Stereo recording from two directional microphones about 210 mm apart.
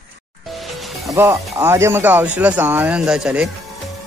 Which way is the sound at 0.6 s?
Centre (ahead or behind).